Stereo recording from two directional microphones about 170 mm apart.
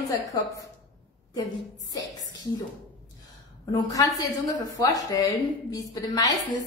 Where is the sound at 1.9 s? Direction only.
20° left (ahead or behind).